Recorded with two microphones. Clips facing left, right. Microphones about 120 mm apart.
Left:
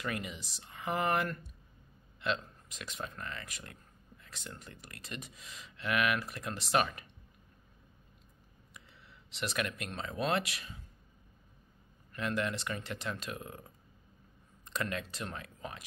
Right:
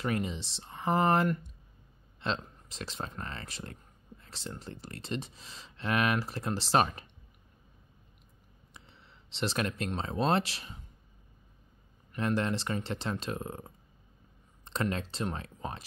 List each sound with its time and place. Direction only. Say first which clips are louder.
0.0 s speech: right 6 dB; 30° right (ahead or behind)
8.7 s a sound: right 1 dB; 30° right (ahead or behind)
9.8 s speech: right 6 dB; 30° right (ahead or behind)
12.2 s speech: right 4 dB; 35° right (ahead or behind)